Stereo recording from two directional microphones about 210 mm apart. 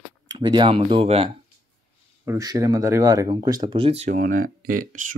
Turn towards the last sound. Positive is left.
turn(degrees=-40)  # may be behind; listen again after turning